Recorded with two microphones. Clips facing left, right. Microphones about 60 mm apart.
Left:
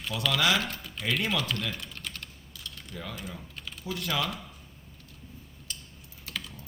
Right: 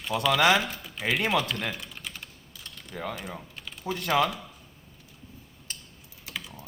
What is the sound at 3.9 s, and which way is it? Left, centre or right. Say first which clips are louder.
Speech: right 7 dB; right.